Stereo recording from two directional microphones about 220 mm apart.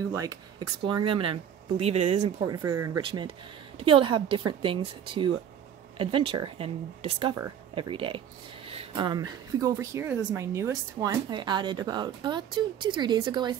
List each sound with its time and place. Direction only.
0.1 s a woman's voice: 15° right (ahead or behind)
2.4 s a woman's voice: 15° right (ahead or behind)